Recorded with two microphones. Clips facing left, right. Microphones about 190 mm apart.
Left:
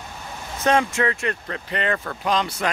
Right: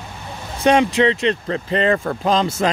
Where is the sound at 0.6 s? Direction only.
15° right (ahead or behind).